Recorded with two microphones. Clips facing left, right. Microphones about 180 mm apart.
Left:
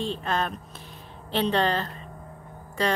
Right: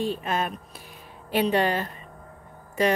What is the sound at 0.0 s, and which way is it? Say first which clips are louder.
Speech: right 1 dB; 15° right (ahead or behind).